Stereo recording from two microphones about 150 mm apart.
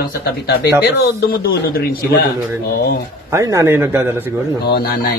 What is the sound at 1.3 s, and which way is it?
Speech, 90° left.